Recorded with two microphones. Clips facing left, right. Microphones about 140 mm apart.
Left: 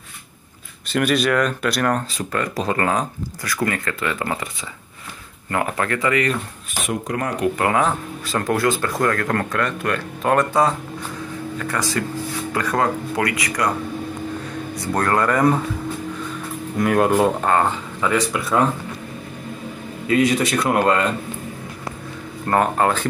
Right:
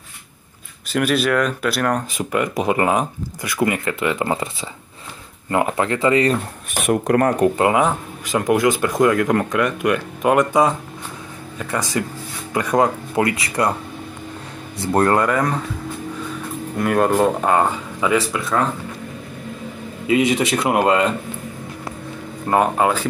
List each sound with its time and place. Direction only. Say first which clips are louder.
0.9 s speech: even; 5° right (ahead or behind)
2.1 s speech: right 3 dB; 20° right (ahead or behind)
5.5 s speech: right 3 dB; 20° right (ahead or behind)
6.9 s speech: right 8 dB; 50° right (ahead or behind)
7.4 s speech: right 3 dB; 25° right (ahead or behind)
14.8 s speech: right 4 dB; 25° right (ahead or behind)
16.7 s speech: even; centre (ahead or behind)
17.4 s speech: right 1 dB; 10° right (ahead or behind)
20.1 s speech: right 1 dB; 20° right (ahead or behind)
22.5 s speech: right 1 dB; 10° right (ahead or behind)